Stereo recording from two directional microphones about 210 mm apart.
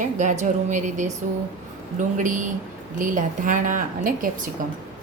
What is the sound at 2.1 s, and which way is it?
A woman's voice, 40° right (ahead or behind).